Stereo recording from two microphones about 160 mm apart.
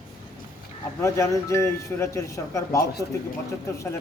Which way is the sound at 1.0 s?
20° left (ahead or behind).